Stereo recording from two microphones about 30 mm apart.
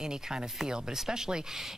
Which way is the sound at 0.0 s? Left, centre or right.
Right.